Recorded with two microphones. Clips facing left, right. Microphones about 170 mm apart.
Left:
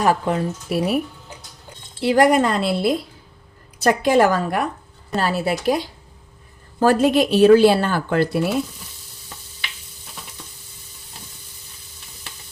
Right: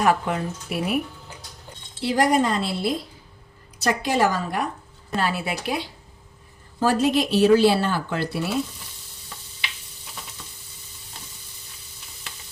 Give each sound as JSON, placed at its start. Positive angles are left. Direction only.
{"t": 0.0, "sound": "speech", "side_deg": 35}
{"t": 2.0, "sound": "a woman's voice", "side_deg": 60}
{"t": 5.1, "sound": "speech", "side_deg": 40}
{"t": 6.7, "sound": "speech", "side_deg": 55}